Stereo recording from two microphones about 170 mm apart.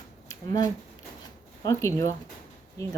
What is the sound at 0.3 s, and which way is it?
Speech, 20° left (ahead or behind).